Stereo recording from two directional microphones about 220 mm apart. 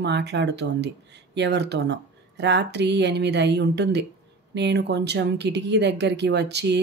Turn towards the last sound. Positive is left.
turn(degrees=-50)  # may be behind; listen again after turning